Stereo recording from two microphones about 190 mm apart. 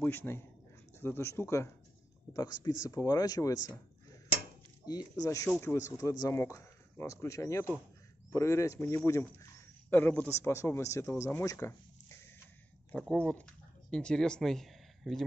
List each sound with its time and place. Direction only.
0.0 s speech: 10° left (ahead or behind)
5.2 s speech: 15° left (ahead or behind); by 15.2 s centre (ahead or behind)